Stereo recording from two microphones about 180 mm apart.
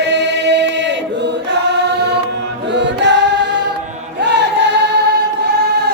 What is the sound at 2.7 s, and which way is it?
Choir, 75° right (ahead or behind).